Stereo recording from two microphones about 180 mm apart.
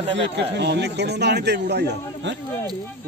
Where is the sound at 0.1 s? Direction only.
75° right (ahead or behind).